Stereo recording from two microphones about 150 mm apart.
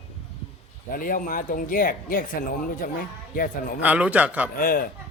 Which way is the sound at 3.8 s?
10° right (ahead or behind).